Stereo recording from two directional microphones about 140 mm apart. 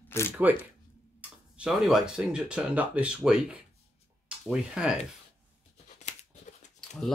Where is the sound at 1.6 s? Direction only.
5° right (ahead or behind).